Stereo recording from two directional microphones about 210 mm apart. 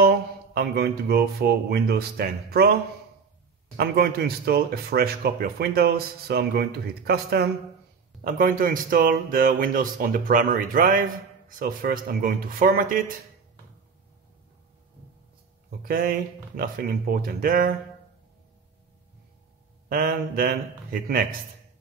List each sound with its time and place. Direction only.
0.6 s speech: 50° right (ahead or behind)
3.7 s speech: 50° right (ahead or behind)
15.8 s speech: 45° right (ahead or behind)
19.9 s speech: 45° right (ahead or behind)